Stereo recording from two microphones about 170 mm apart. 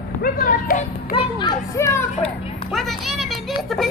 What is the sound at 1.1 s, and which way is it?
Children playing, 30° left (ahead or behind).